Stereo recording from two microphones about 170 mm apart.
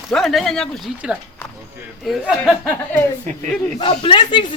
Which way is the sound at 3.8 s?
30° left (ahead or behind).